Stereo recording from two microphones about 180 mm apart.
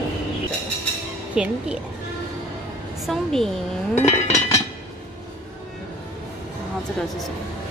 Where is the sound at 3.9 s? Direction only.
40° left (ahead or behind).